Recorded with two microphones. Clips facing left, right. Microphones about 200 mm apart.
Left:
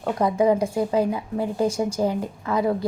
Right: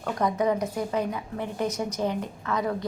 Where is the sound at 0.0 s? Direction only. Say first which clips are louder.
Left 5 dB; 30° left (ahead or behind).